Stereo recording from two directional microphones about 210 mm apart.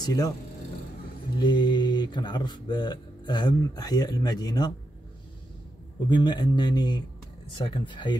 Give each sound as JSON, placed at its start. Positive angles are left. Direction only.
{"t": 0.0, "sound": "speech", "side_deg": 15}
{"t": 1.4, "sound": "speech", "side_deg": 20}
{"t": 6.0, "sound": "speech", "side_deg": 20}